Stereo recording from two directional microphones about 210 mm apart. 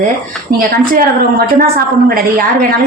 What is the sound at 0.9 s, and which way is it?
A woman's voice, 45° right (ahead or behind).